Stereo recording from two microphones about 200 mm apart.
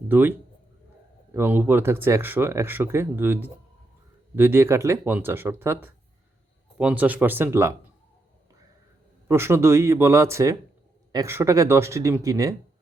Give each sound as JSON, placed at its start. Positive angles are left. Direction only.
{"t": 0.1, "sound": "speech", "side_deg": -10}
{"t": 9.2, "sound": "speech", "side_deg": -10}